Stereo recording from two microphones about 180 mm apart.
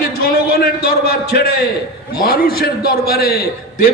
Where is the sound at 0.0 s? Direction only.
55° left (ahead or behind).